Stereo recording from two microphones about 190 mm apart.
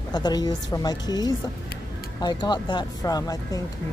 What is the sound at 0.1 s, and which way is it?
A woman's voice, 20° left (ahead or behind).